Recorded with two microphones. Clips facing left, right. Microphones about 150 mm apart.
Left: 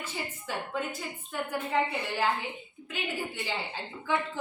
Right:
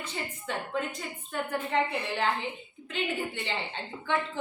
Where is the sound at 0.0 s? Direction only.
5° left (ahead or behind).